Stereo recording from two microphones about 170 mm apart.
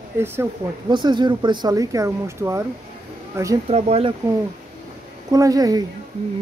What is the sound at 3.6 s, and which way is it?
Speech, 35° right (ahead or behind).